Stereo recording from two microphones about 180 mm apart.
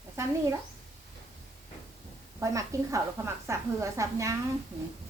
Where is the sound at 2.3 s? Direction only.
15° right (ahead or behind).